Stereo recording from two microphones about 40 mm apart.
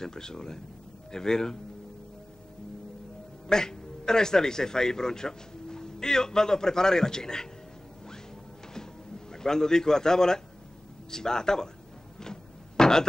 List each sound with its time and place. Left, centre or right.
0.0 s a man's voice: centre
3.4 s a man's voice: centre
9.3 s a man's voice: centre
12.2 s a sound: centre